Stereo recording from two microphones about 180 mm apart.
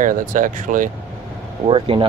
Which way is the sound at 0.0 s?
45° right (ahead or behind).